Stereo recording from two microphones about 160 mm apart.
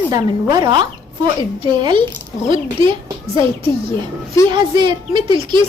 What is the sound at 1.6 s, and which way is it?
Speech, 30° right (ahead or behind).